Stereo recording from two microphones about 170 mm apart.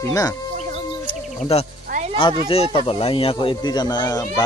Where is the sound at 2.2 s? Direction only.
30° left (ahead or behind).